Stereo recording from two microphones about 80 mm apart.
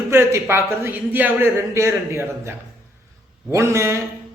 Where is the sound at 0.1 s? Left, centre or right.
Right.